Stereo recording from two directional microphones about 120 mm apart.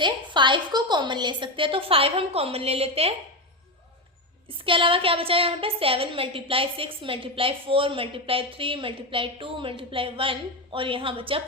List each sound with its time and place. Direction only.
0.0 s a woman's voice: 40° right (ahead or behind)
4.6 s a woman's voice: 45° right (ahead or behind)